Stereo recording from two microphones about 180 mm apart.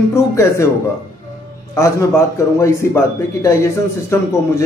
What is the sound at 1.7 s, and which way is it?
Speech, 15° left (ahead or behind).